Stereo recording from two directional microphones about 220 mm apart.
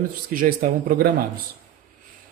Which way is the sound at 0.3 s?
40° right (ahead or behind).